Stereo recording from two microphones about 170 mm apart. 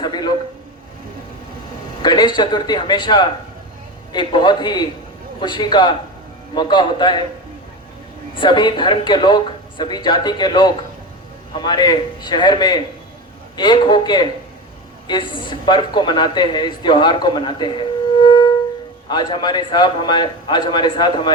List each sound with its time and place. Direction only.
0.0 s a sound: 25° left (ahead or behind)
2.0 s a man's voice: 25° left (ahead or behind)
8.4 s speech: 25° left (ahead or behind)